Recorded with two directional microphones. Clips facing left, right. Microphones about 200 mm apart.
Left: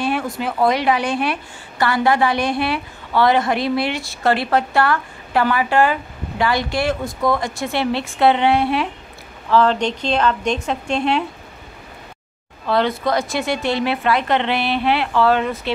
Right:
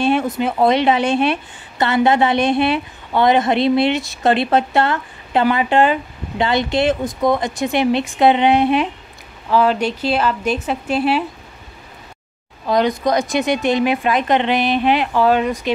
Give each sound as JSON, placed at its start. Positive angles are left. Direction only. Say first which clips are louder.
{"t": 0.0, "sound": "a woman's voice", "louder": "right 5 dB", "side_deg": -25}
{"t": 12.6, "sound": "a woman's voice", "louder": "right 2 dB", "side_deg": -15}